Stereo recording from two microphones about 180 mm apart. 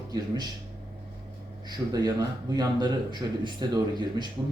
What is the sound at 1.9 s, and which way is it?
A man's voice, 20° right (ahead or behind).